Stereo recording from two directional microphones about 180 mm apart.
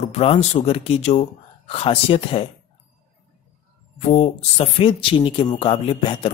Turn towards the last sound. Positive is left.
turn(degrees=30)  # may be behind; listen again after turning